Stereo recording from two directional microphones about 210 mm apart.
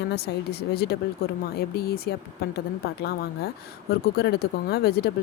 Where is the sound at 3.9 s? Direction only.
50° left (ahead or behind).